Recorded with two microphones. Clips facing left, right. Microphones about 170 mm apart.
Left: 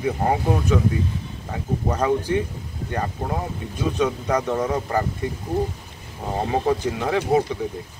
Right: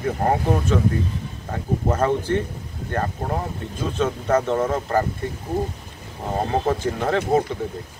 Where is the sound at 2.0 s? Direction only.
10° left (ahead or behind).